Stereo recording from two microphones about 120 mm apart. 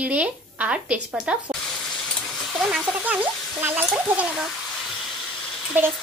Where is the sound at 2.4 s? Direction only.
Centre (ahead or behind).